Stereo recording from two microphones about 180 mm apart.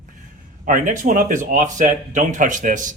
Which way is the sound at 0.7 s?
45° right (ahead or behind).